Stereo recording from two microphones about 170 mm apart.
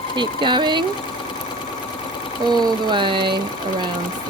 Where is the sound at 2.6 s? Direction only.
25° right (ahead or behind).